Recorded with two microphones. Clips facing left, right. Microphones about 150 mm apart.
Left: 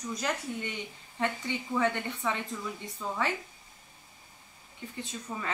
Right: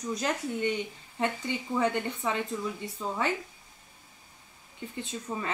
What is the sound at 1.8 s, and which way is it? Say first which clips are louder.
Speech: right 1 dB; 15° right (ahead or behind).